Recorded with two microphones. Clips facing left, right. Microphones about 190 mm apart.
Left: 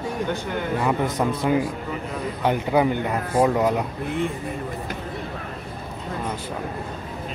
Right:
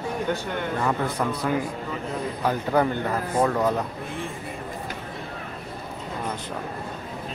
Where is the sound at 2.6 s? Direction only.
10° left (ahead or behind).